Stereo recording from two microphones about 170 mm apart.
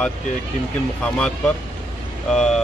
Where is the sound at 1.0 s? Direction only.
5° left (ahead or behind).